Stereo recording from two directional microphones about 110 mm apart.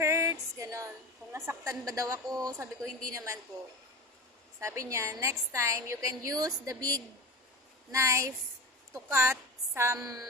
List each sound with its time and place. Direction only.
0.0 s music: 25° right (ahead or behind)
1.2 s a sound: 25° right (ahead or behind)
1.9 s a woman's voice: 30° right (ahead or behind)
4.6 s a woman's voice: 30° right (ahead or behind)